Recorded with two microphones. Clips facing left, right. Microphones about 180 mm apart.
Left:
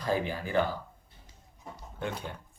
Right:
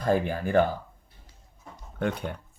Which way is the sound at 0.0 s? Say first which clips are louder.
Right 5 dB; 50° right (ahead or behind).